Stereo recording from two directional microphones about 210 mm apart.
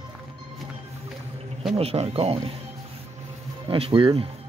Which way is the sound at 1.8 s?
30° right (ahead or behind).